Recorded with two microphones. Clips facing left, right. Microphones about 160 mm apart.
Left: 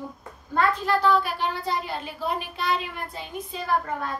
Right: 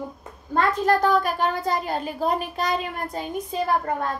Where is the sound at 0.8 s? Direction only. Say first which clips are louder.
Right 3 dB; 45° right (ahead or behind).